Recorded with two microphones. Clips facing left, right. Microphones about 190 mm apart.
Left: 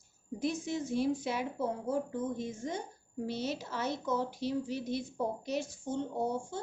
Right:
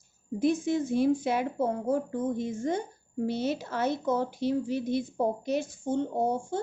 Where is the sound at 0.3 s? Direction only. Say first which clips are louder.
Right 8 dB; 55° right (ahead or behind).